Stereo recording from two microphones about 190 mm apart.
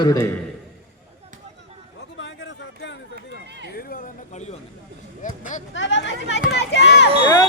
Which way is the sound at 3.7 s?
50° left (ahead or behind).